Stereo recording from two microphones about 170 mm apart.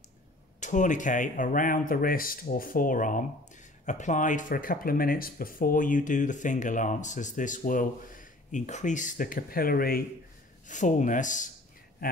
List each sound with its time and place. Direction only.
0.6 s speech: 45° left (ahead or behind)
10.7 s speech: 45° left (ahead or behind)